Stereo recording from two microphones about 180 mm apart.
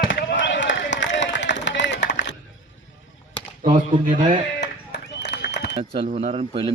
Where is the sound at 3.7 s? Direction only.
45° right (ahead or behind).